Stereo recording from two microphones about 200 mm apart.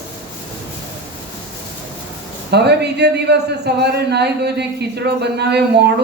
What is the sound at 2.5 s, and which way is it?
A man's voice, 55° right (ahead or behind).